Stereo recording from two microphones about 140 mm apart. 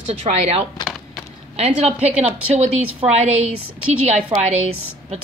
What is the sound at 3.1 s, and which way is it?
Speech, 50° right (ahead or behind).